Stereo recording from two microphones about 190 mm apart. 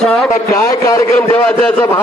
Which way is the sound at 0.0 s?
5° left (ahead or behind).